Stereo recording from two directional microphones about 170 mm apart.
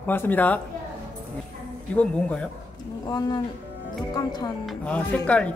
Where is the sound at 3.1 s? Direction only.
25° left (ahead or behind).